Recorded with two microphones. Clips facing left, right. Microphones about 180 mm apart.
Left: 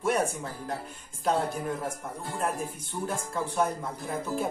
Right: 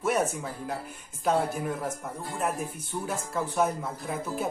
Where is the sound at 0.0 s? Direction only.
5° right (ahead or behind).